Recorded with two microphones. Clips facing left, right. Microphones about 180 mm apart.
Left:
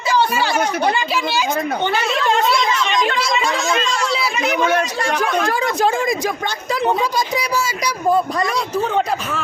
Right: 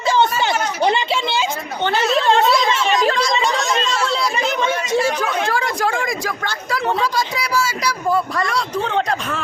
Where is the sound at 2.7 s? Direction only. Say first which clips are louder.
Right 2 dB; 35° right (ahead or behind).